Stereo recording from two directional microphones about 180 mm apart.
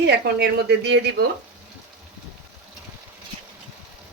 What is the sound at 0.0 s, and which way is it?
Speech, 65° right (ahead or behind).